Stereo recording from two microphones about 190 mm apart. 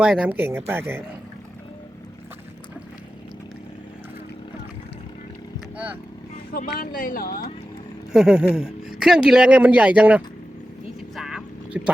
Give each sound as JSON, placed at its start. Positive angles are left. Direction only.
{"t": 0.0, "sound": "speech", "side_deg": -5}
{"t": 6.5, "sound": "speech", "side_deg": 50}
{"t": 8.1, "sound": "speech", "side_deg": -5}
{"t": 11.1, "sound": "a sound", "side_deg": 0}